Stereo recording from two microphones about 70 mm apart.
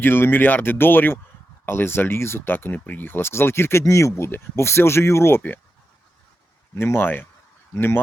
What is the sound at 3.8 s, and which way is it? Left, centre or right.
Speech, left.